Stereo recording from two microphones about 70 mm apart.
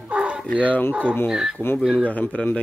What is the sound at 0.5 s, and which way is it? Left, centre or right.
Speech, left.